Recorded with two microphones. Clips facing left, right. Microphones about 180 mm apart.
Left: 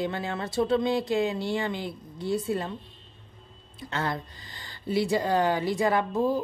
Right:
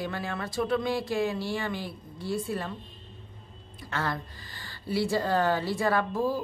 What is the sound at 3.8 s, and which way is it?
A woman's voice, 20° left (ahead or behind).